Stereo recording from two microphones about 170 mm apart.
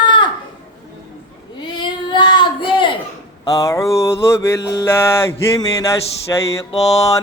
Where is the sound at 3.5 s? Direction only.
20° left (ahead or behind).